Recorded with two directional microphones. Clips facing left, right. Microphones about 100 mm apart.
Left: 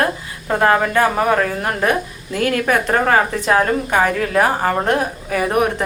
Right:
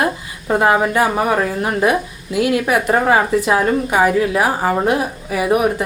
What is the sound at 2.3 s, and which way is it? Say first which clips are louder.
A woman's voice: right 2 dB; 10° right (ahead or behind).